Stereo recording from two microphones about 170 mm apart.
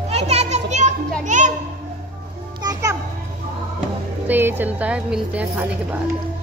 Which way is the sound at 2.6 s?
20° right (ahead or behind).